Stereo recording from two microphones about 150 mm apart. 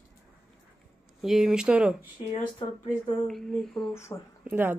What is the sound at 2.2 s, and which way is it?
Speech, 40° left (ahead or behind).